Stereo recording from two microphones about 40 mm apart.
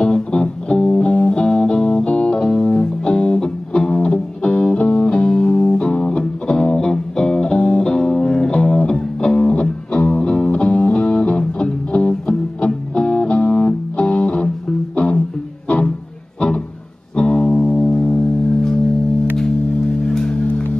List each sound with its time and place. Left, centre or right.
0.0 s music: left
2.5 s music: left
7.5 s music: left
8.5 s music: left
12.1 s music: left
16.3 s music: left